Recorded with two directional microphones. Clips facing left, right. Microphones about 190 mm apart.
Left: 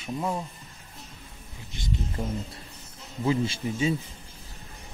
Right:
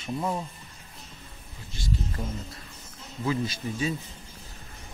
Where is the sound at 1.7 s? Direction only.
20° left (ahead or behind).